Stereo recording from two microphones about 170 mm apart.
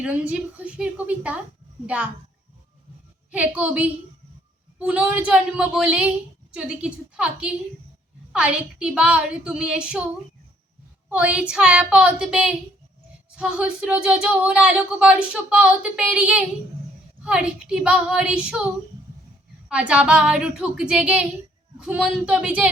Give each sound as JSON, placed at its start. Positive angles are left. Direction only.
{"t": 0.0, "sound": "a woman's voice", "side_deg": -5}
{"t": 3.3, "sound": "a woman's voice", "side_deg": -10}
{"t": 11.1, "sound": "speech", "side_deg": -5}
{"t": 19.6, "sound": "a woman's voice", "side_deg": -5}